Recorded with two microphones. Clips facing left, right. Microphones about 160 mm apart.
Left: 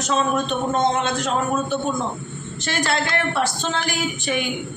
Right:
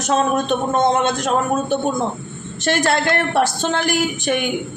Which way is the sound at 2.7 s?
50° right (ahead or behind).